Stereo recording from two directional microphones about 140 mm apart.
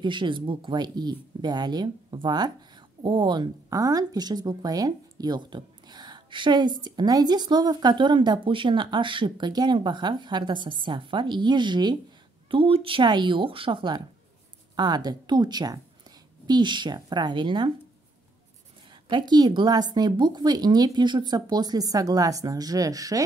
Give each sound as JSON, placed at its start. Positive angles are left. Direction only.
{"t": 0.0, "sound": "speech", "side_deg": -35}
{"t": 19.0, "sound": "a woman's voice", "side_deg": -35}